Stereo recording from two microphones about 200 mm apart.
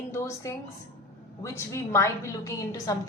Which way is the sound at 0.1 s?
15° left (ahead or behind).